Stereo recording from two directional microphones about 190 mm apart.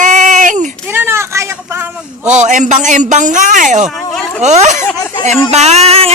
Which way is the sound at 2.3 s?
40° right (ahead or behind).